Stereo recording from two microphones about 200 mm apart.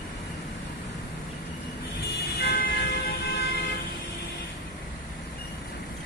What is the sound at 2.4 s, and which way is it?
Vehicle, 50° left (ahead or behind).